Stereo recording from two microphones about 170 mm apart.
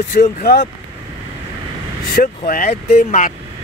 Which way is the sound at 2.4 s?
55° left (ahead or behind).